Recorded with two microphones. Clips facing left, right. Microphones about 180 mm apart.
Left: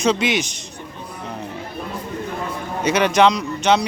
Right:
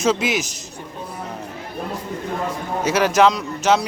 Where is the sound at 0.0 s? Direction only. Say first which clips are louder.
Left 1 dB; 5° right (ahead or behind).